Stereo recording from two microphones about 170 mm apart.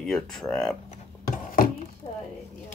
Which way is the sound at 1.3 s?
55° left (ahead or behind).